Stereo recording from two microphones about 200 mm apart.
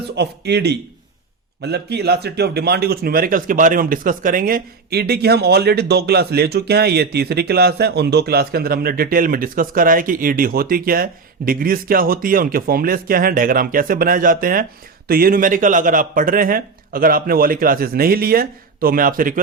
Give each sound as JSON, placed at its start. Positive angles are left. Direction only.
{"t": 0.2, "sound": "a man's voice", "side_deg": -55}